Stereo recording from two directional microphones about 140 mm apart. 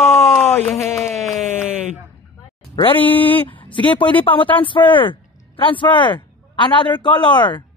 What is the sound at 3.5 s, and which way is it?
Speech, 35° left (ahead or behind).